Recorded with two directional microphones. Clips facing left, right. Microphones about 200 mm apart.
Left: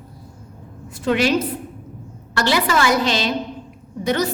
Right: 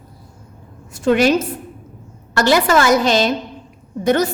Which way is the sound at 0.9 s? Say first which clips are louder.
Right 4 dB; 45° right (ahead or behind).